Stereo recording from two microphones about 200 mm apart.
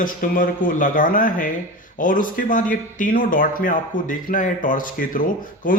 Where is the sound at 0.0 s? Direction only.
40° left (ahead or behind).